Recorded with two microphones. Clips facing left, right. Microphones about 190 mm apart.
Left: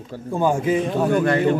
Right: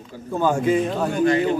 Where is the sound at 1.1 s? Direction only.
55° left (ahead or behind).